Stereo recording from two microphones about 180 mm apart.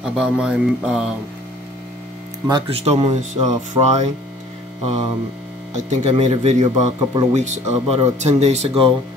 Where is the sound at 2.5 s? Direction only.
30° right (ahead or behind).